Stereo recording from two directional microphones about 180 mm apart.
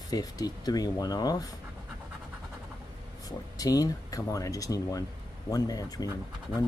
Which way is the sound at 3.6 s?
20° left (ahead or behind).